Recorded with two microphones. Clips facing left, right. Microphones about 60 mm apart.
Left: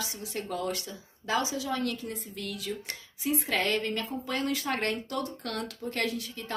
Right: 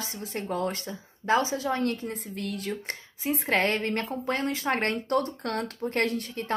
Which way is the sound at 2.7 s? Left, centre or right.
Right.